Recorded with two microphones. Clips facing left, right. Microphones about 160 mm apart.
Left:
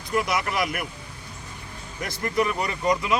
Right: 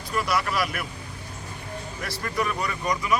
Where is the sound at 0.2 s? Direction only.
20° left (ahead or behind).